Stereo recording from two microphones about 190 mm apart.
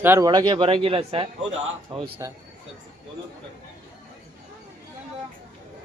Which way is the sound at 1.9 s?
15° right (ahead or behind).